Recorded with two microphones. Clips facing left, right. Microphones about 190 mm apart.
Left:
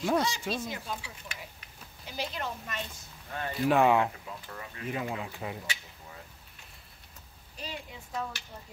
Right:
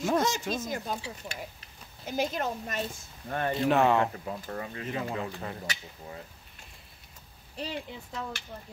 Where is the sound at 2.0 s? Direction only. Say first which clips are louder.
Right 6 dB; 45° right (ahead or behind).